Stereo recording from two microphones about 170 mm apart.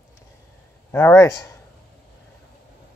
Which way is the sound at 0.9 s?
15° left (ahead or behind).